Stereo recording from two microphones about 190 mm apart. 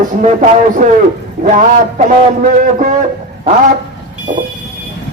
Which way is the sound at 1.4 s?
45° right (ahead or behind).